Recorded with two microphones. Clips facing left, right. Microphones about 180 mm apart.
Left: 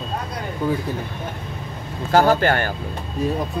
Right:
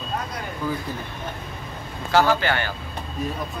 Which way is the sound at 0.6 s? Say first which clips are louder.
Left 5 dB; 30° left (ahead or behind).